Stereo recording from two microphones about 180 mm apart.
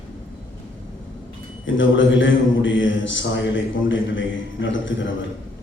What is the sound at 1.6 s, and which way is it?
A man's voice, 90° left.